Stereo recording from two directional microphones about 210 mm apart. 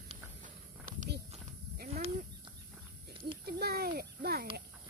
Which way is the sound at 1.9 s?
30° right (ahead or behind).